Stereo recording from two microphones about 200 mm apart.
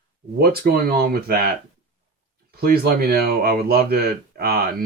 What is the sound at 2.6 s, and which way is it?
Speech, 50° right (ahead or behind).